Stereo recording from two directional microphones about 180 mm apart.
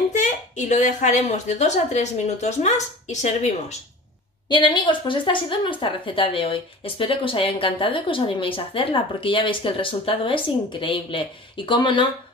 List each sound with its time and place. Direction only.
0.1 s speech: 45° left (ahead or behind)
4.5 s a woman's voice: 25° left (ahead or behind)